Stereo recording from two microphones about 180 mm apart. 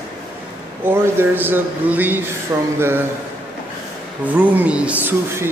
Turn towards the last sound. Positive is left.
turn(degrees=-10)  # may be behind; listen again after turning